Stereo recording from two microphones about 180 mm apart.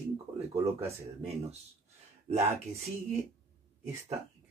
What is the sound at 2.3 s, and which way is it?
Speech, 40° right (ahead or behind).